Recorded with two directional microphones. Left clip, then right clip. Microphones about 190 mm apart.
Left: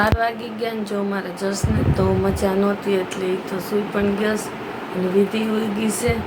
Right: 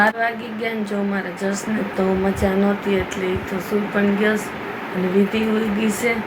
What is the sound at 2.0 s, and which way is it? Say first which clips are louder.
Speech: right 1 dB; 15° left (ahead or behind).